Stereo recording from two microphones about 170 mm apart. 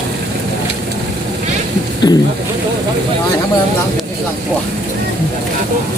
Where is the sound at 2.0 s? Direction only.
25° left (ahead or behind).